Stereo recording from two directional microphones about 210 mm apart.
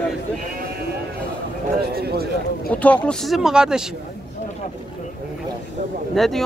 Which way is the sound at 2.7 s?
5° left (ahead or behind).